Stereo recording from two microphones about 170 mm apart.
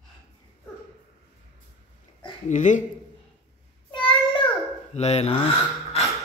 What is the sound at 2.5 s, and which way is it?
Speech, 45° left (ahead or behind).